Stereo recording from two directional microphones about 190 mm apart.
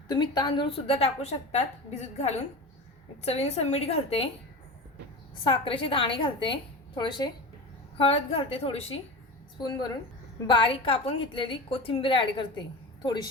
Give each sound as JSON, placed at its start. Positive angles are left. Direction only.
{"t": 0.1, "sound": "a woman's voice", "side_deg": 20}
{"t": 5.4, "sound": "a woman's voice", "side_deg": 25}